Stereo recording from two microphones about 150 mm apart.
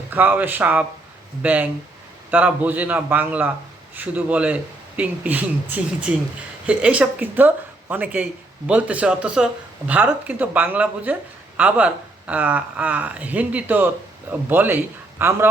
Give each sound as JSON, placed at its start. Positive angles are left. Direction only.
{"t": 0.1, "sound": "a woman's voice", "side_deg": -10}